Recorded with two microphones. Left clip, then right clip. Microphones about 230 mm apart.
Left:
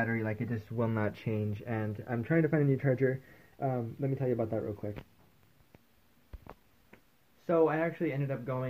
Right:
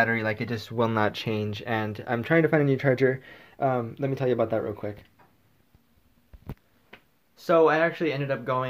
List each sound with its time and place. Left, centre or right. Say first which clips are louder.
0.0 s speech: right 9 dB; centre
7.4 s speech: right 8 dB; centre